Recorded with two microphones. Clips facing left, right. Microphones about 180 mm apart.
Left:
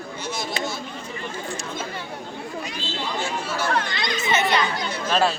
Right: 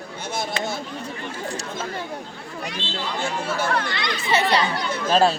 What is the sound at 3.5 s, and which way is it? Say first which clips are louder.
Speech: left 3 dB; 55° right (ahead or behind).